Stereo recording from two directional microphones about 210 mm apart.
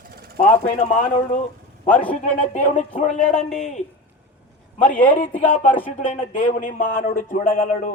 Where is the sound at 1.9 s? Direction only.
5° left (ahead or behind).